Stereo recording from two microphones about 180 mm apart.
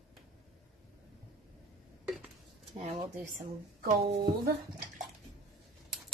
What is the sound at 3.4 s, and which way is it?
Speech, 55° right (ahead or behind).